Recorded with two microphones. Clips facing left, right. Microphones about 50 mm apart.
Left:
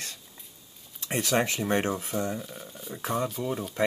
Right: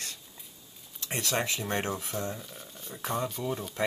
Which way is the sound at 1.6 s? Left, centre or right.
Centre.